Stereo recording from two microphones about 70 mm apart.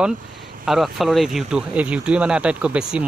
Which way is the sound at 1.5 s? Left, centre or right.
Centre.